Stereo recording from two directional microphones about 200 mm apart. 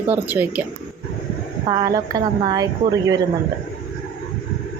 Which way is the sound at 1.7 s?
20° right (ahead or behind).